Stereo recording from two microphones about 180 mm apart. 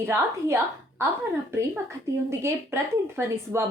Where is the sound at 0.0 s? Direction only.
15° right (ahead or behind).